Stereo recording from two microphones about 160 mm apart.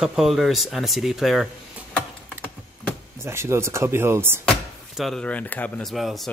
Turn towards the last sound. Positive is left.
turn(degrees=0)  # may be behind; listen again after turning